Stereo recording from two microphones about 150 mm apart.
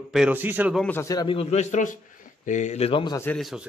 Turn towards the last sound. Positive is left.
turn(degrees=35)  # may be behind; listen again after turning